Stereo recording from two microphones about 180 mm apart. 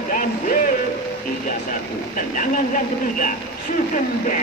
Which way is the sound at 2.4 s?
50° left (ahead or behind).